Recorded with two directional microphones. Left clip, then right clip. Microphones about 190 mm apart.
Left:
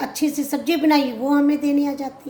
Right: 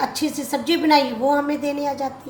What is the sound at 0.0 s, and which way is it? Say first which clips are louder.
A woman's voice: even; 60° left (ahead or behind).